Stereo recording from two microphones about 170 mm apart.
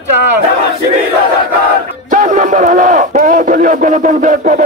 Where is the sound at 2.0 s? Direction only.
50° right (ahead or behind).